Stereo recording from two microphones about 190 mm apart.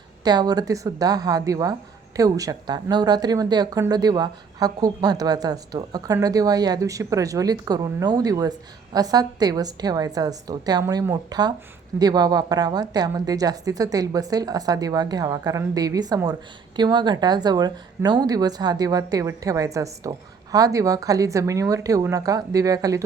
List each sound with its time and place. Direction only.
0.3 s speech: 20° right (ahead or behind)